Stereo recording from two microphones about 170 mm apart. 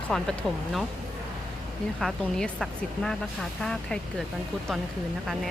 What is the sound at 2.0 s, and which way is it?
Speech, centre (ahead or behind).